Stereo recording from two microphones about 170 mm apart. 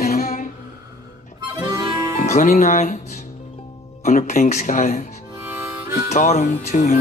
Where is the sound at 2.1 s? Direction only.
45° left (ahead or behind).